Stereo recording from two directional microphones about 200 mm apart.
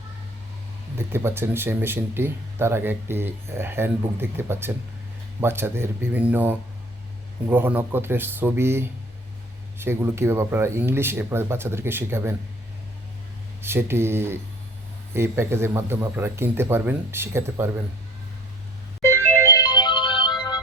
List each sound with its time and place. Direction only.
0.9 s speech: 10° right (ahead or behind)
13.6 s speech: 10° right (ahead or behind)
19.0 s music: 15° left (ahead or behind)